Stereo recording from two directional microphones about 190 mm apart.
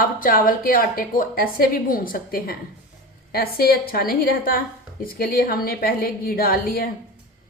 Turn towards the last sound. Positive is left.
turn(degrees=50)  # may be behind; listen again after turning